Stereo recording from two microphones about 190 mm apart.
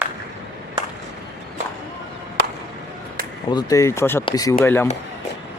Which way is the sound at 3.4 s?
20° left (ahead or behind).